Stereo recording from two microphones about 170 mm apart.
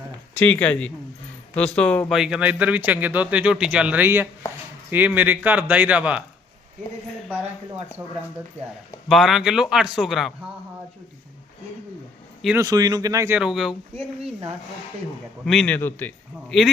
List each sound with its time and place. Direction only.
0.3 s a man's voice: 10° left (ahead or behind); by 6.2 s 10° right (ahead or behind)
8.6 s speech: 40° right (ahead or behind)
9.0 s speech: centre (ahead or behind)
12.5 s speech: 20° right (ahead or behind); by 13.7 s 5° right (ahead or behind)
15.4 s a man's voice: 5° left (ahead or behind)